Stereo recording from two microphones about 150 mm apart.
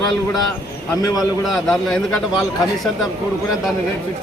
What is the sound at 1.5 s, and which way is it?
Speech, centre (ahead or behind).